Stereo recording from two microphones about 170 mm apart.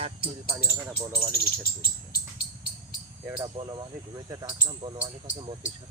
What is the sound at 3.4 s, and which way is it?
Speech, 25° right (ahead or behind).